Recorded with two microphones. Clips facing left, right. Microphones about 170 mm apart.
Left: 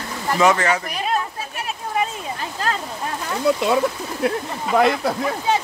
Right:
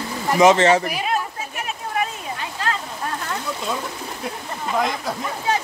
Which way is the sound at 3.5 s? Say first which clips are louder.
Left 13 dB; 70° left (ahead or behind).